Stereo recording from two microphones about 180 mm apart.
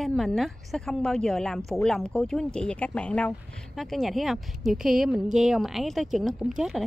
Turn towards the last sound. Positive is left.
turn(degrees=-5)  # may be behind; listen again after turning